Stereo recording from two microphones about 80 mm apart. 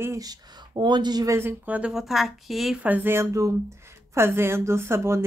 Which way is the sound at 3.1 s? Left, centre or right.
Right.